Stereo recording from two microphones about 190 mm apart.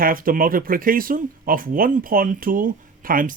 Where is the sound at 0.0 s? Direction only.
50° right (ahead or behind).